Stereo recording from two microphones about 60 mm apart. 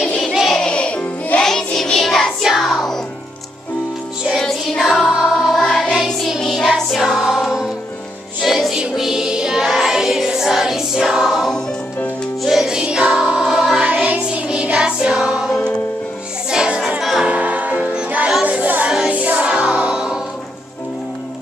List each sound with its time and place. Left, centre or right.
0.6 s music: centre
1.4 s child singing: centre
2.4 s music: centre
4.3 s music: centre
5.1 s music: centre
13.8 s music: right
16.4 s music: centre
18.9 s music: centre